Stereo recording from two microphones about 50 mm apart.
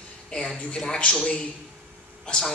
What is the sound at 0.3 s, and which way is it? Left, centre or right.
A man's voice, centre.